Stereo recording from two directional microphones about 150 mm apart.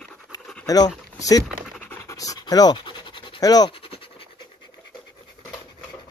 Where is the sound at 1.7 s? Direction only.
15° left (ahead or behind); by 4.3 s 40° left (ahead or behind).